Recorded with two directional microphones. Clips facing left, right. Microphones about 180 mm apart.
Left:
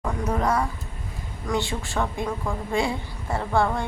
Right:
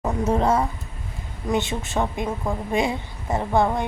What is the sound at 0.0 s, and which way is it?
A woman's voice, 25° right (ahead or behind).